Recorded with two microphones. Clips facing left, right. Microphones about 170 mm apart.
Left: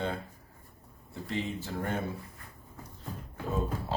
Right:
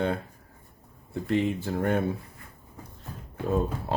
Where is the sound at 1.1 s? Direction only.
55° right (ahead or behind).